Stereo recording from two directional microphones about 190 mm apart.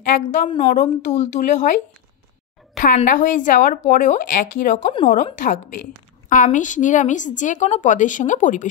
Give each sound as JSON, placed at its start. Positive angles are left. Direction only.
{"t": 0.0, "sound": "a woman's voice", "side_deg": 40}
{"t": 0.5, "sound": "a woman's voice", "side_deg": 30}
{"t": 2.8, "sound": "a woman's voice", "side_deg": 45}